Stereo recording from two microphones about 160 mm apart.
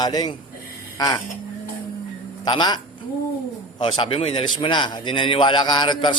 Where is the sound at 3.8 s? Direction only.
35° left (ahead or behind).